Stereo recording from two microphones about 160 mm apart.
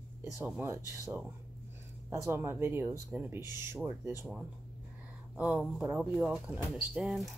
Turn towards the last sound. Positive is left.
turn(degrees=0)  # may be behind; listen again after turning